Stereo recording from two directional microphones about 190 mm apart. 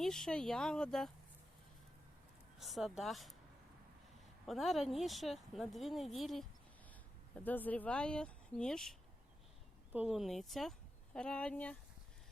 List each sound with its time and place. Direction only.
0.0 s speech: centre (ahead or behind)
2.6 s speech: centre (ahead or behind)
4.4 s speech: centre (ahead or behind)